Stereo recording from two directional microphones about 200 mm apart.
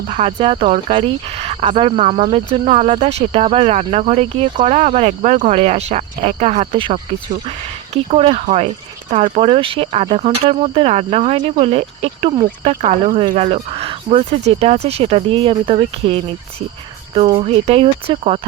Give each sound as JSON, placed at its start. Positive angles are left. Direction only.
{"t": 0.1, "sound": "speech", "side_deg": -30}